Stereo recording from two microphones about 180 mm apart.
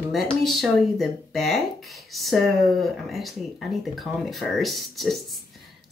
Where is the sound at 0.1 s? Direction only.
Centre (ahead or behind).